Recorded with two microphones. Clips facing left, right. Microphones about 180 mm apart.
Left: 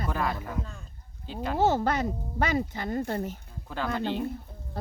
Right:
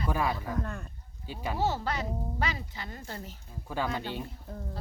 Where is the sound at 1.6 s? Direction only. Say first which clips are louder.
Left 7 dB; 50° left (ahead or behind).